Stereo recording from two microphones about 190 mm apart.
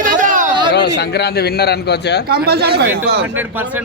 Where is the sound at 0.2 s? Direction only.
45° right (ahead or behind).